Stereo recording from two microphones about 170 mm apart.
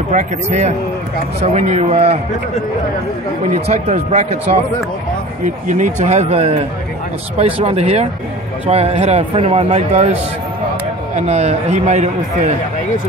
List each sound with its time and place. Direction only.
0.1 s speech: 45° right (ahead or behind)
3.6 s speech: 40° right (ahead or behind)
11.1 s speech: 40° right (ahead or behind)